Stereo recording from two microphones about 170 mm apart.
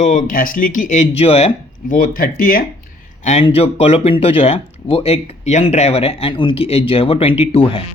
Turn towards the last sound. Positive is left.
turn(degrees=35)  # may be behind; listen again after turning